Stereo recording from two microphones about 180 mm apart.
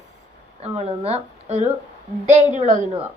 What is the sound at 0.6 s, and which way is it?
Speech, 35° right (ahead or behind).